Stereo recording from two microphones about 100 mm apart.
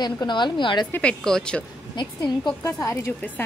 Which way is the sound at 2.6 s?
30° left (ahead or behind).